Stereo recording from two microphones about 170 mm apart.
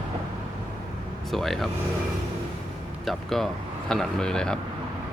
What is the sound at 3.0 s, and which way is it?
Speech, centre (ahead or behind).